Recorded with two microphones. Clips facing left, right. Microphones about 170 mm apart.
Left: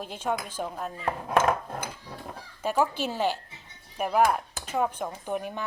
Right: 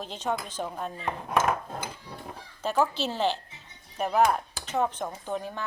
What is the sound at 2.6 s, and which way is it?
Speech, 10° left (ahead or behind).